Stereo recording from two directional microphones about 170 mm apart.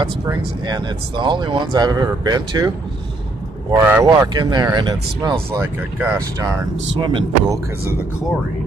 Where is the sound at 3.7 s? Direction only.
15° right (ahead or behind).